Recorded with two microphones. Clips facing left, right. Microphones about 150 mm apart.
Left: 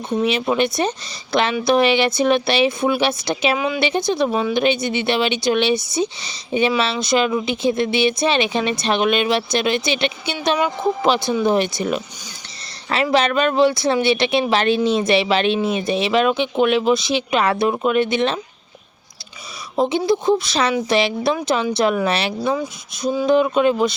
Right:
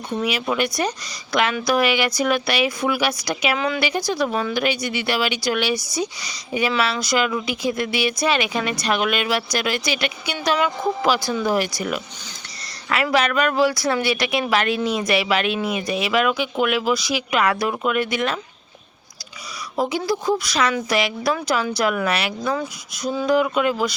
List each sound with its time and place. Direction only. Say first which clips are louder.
0.2 s speech: left 4 dB; 25° left (ahead or behind)
19.7 s speech: left 5 dB; 25° left (ahead or behind)